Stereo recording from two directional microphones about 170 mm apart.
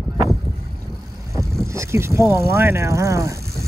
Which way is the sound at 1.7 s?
15° right (ahead or behind).